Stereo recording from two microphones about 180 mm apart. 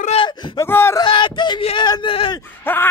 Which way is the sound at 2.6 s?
10° left (ahead or behind).